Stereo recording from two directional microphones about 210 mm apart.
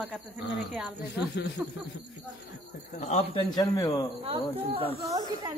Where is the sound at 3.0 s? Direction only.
30° left (ahead or behind).